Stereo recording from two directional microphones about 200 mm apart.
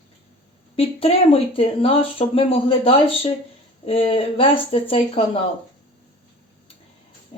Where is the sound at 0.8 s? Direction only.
30° left (ahead or behind).